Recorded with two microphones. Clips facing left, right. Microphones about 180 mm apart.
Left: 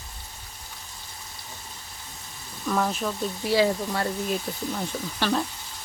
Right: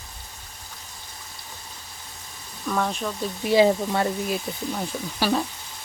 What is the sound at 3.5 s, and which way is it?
Speech, 20° right (ahead or behind).